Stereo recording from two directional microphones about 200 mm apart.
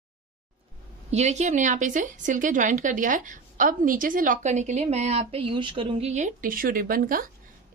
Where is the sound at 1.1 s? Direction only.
35° right (ahead or behind).